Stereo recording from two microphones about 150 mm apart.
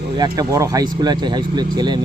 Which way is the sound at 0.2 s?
25° right (ahead or behind).